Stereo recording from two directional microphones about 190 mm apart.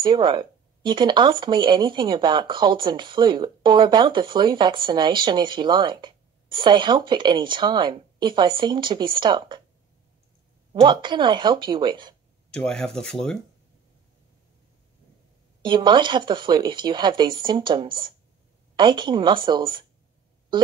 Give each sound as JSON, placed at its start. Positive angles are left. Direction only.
{"t": 0.0, "sound": "speech", "side_deg": -25}
{"t": 10.7, "sound": "speech", "side_deg": -25}
{"t": 12.4, "sound": "speech", "side_deg": 5}
{"t": 15.6, "sound": "speech", "side_deg": -25}